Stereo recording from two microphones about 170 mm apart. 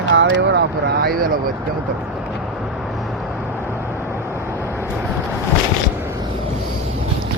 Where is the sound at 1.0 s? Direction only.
60° right (ahead or behind).